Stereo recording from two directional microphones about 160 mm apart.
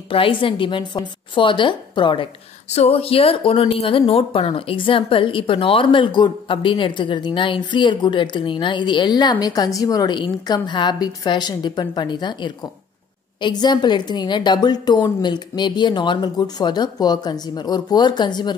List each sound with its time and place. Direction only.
0.1 s speech: 35° left (ahead or behind)
2.7 s a woman's voice: 40° left (ahead or behind)